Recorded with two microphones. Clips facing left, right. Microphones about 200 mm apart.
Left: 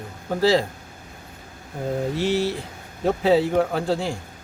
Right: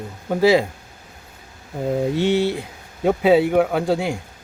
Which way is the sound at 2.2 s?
20° right (ahead or behind).